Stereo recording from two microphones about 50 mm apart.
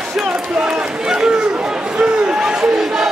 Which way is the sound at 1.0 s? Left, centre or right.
Centre.